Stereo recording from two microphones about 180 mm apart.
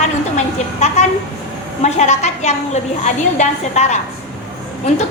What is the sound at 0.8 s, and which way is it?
A woman's voice, 40° left (ahead or behind).